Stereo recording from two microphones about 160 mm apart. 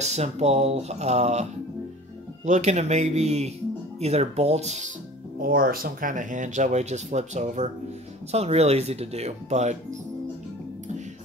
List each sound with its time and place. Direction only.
0.0 s speech: 45° right (ahead or behind)
5.4 s speech: 65° right (ahead or behind); by 9.8 s 45° right (ahead or behind)